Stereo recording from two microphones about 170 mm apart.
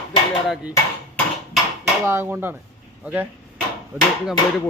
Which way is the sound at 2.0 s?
15° right (ahead or behind).